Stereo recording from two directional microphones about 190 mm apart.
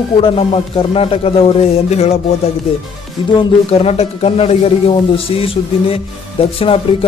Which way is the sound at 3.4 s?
30° left (ahead or behind).